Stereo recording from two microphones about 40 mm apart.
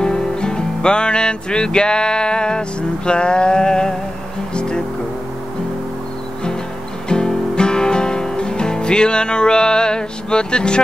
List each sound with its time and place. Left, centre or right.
0.0 s music: centre
3.1 s mantra: left
4.6 s music: left
7.1 s music: left